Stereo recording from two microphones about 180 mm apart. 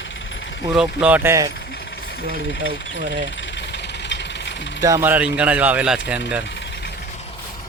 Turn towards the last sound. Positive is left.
turn(degrees=-5)  # may be behind; listen again after turning